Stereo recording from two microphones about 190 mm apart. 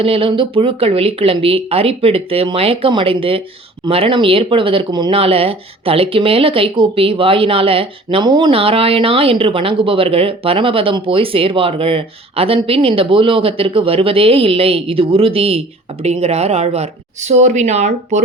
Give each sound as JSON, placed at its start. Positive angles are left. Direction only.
{"t": 0.0, "sound": "a woman's voice", "side_deg": -30}